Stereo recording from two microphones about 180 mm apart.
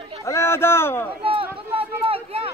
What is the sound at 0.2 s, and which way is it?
Speech, 15° left (ahead or behind).